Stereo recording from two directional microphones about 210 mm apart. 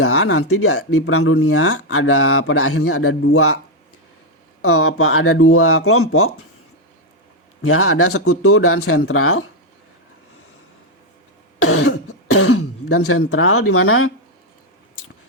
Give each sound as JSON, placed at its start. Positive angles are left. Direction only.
{"t": 0.0, "sound": "a man's voice", "side_deg": 90}
{"t": 4.6, "sound": "speech", "side_deg": 90}
{"t": 7.6, "sound": "speech", "side_deg": 90}
{"t": 11.6, "sound": "speech", "side_deg": 80}